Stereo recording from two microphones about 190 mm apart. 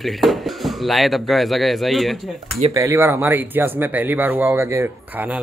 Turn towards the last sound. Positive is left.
turn(degrees=-10)  # may be behind; listen again after turning